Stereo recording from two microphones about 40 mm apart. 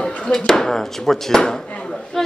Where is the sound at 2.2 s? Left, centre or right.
Centre.